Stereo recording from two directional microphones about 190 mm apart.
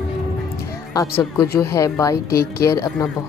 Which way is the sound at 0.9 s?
15° left (ahead or behind).